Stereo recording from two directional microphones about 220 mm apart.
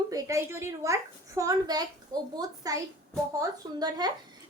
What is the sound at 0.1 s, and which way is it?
A woman's voice, 15° right (ahead or behind).